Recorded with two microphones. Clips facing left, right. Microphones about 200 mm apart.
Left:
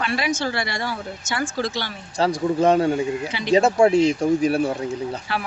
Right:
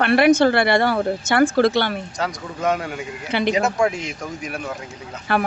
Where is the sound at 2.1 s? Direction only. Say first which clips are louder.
Left 7 dB; 30° left (ahead or behind).